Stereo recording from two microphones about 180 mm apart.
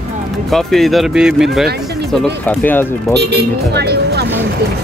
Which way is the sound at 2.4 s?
10° left (ahead or behind).